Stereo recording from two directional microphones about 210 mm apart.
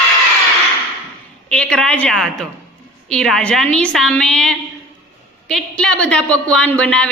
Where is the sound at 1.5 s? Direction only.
5° left (ahead or behind).